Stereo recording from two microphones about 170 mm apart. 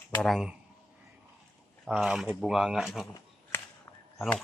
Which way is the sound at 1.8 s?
5° right (ahead or behind).